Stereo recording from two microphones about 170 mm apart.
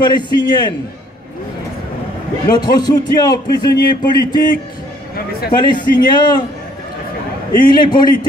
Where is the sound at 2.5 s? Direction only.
25° left (ahead or behind).